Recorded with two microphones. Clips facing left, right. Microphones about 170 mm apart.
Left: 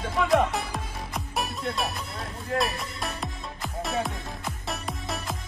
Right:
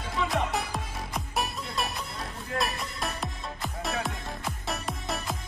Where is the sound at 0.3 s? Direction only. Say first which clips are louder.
Left 6 dB; centre (ahead or behind).